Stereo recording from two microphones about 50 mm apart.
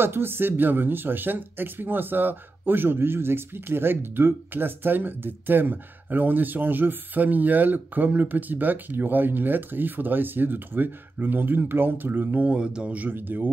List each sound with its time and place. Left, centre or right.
0.0 s speech: right
12.4 s speech: centre
12.9 s speech: right